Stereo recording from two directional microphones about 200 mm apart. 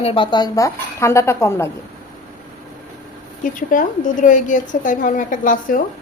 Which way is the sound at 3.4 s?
40° left (ahead or behind).